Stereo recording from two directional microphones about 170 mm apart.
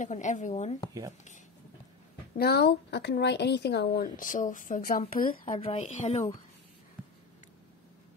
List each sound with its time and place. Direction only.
0.0 s speech: 45° left (ahead or behind)
2.3 s a woman's voice: 70° left (ahead or behind); by 5.6 s 55° left (ahead or behind)
5.6 s a woman's voice: 40° left (ahead or behind)